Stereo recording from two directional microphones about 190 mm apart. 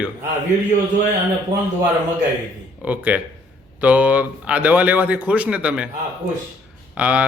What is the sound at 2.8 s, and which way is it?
A man's voice, 10° right (ahead or behind).